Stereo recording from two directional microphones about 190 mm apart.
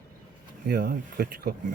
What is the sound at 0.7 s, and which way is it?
Speech, 55° right (ahead or behind).